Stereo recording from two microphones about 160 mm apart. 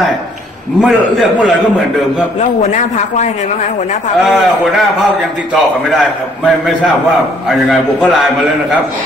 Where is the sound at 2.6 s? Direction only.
45° left (ahead or behind).